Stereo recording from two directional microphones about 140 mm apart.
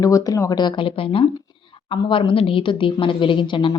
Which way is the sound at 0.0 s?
25° left (ahead or behind).